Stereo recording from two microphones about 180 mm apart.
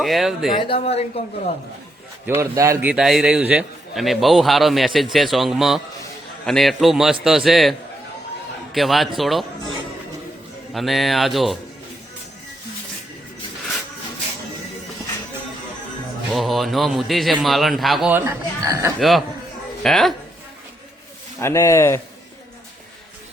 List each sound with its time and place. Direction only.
0.0 s a man's voice: centre (ahead or behind)
0.5 s a woman's voice: 30° left (ahead or behind)
2.2 s speech: 15° right (ahead or behind)
2.9 s a man's voice: 5° right (ahead or behind)
10.8 s a man's voice: centre (ahead or behind)
16.3 s a man's voice: centre (ahead or behind)
18.1 s speech: 10° right (ahead or behind)
18.9 s a man's voice: centre (ahead or behind)
21.3 s speech: 15° left (ahead or behind)